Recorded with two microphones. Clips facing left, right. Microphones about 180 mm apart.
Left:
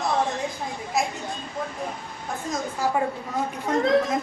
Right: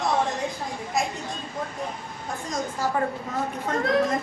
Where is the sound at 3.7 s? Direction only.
10° left (ahead or behind).